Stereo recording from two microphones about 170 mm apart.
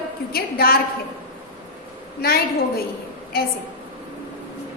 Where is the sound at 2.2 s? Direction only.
65° left (ahead or behind).